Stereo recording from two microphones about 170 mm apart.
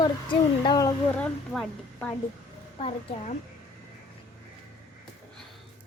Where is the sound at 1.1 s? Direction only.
5° left (ahead or behind).